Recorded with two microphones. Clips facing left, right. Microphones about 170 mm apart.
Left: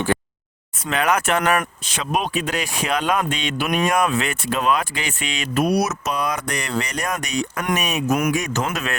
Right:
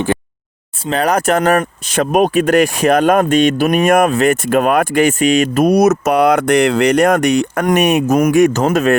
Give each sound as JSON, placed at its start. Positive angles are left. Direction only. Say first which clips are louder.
{"t": 0.9, "sound": "speech", "louder": "right 6 dB", "side_deg": -35}
{"t": 8.0, "sound": "speech", "louder": "right 7 dB", "side_deg": -40}
{"t": 8.3, "sound": "speech", "louder": "right 12 dB", "side_deg": -55}